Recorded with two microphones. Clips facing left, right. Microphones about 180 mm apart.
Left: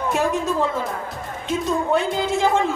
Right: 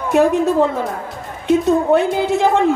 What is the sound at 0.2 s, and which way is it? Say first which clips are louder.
Speech: right 10 dB; 60° right (ahead or behind).